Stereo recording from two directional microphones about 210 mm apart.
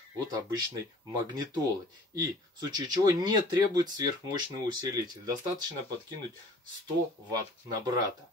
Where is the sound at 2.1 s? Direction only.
15° right (ahead or behind).